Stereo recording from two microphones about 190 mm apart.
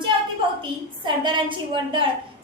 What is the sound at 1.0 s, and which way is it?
A child's voice, 25° right (ahead or behind).